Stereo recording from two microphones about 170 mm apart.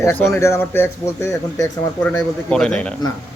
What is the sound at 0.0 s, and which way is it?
Speech, 15° left (ahead or behind).